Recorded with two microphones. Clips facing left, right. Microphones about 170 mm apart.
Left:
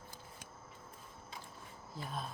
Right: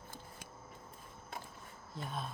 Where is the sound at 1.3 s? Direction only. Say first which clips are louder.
Right 5 dB; 55° right (ahead or behind).